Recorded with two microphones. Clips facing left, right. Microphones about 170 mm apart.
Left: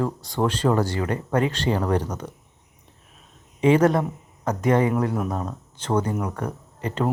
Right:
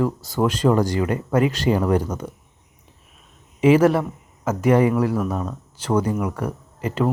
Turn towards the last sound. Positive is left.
turn(degrees=-5)  # may be behind; listen again after turning